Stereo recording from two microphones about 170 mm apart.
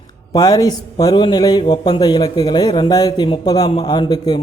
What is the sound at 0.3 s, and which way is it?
A man's voice, 20° left (ahead or behind).